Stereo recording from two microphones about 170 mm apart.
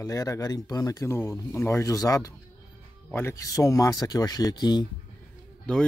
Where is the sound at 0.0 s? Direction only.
20° left (ahead or behind).